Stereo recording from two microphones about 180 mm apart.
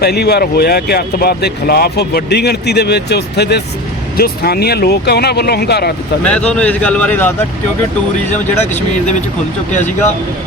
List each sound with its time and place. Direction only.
0.0 s speech: 65° left (ahead or behind)
6.2 s a man's voice: 5° left (ahead or behind)